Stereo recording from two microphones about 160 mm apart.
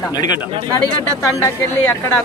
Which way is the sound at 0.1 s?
25° left (ahead or behind).